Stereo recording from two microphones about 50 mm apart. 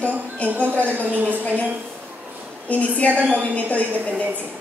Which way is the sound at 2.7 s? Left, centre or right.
Left.